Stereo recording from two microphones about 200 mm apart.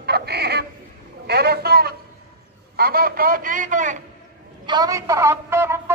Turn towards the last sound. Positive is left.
turn(degrees=-10)  # may be behind; listen again after turning